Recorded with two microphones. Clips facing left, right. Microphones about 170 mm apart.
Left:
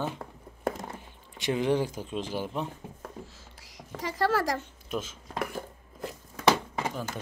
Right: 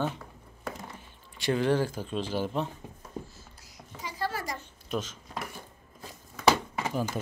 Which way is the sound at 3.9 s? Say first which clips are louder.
Left 7 dB; 75° left (ahead or behind).